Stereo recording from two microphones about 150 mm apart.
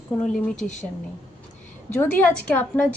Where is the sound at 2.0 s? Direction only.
15° left (ahead or behind).